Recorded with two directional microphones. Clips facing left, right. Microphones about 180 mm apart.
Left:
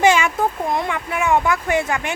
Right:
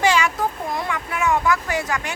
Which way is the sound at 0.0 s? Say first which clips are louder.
Left 3 dB; 20° left (ahead or behind).